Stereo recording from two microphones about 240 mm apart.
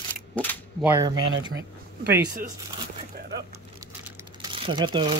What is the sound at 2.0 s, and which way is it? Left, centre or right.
Speech, right.